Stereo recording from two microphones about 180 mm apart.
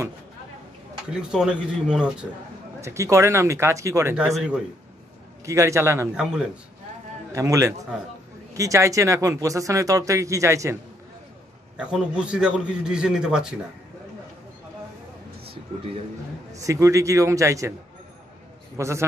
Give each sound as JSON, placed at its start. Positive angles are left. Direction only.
{"t": 1.1, "sound": "a man's voice", "side_deg": -5}
{"t": 2.8, "sound": "speech", "side_deg": -15}
{"t": 5.4, "sound": "speech", "side_deg": -15}
{"t": 7.3, "sound": "speech", "side_deg": -15}
{"t": 11.7, "sound": "a man's voice", "side_deg": -5}
{"t": 16.5, "sound": "speech", "side_deg": -15}
{"t": 18.8, "sound": "speech", "side_deg": -15}